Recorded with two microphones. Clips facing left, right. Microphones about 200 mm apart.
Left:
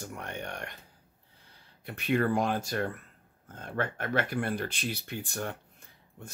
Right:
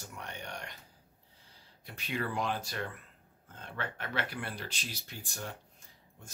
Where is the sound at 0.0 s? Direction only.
55° left (ahead or behind).